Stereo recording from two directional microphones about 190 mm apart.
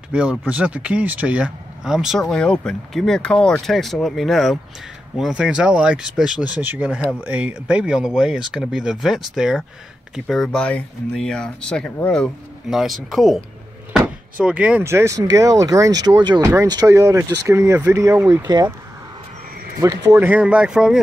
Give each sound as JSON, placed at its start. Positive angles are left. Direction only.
{"t": 0.1, "sound": "speech", "side_deg": -5}
{"t": 14.4, "sound": "speech", "side_deg": -5}
{"t": 19.8, "sound": "speech", "side_deg": -20}